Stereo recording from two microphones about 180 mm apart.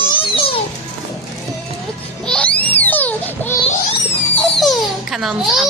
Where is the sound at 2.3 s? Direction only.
5° left (ahead or behind).